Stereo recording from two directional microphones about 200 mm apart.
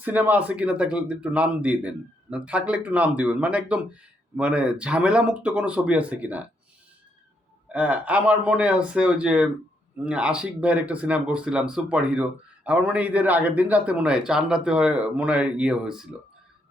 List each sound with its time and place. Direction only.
0.0 s speech: 10° right (ahead or behind)
7.7 s speech: 5° right (ahead or behind)